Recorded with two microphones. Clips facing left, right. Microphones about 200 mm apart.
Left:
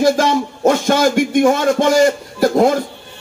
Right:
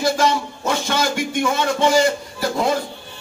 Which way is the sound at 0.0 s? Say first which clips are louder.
Left 5 dB; 45° left (ahead or behind).